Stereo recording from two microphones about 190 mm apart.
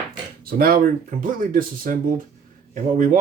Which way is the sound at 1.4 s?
45° right (ahead or behind).